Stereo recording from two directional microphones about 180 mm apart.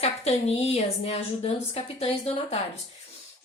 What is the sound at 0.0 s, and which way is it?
A woman's voice, 35° left (ahead or behind).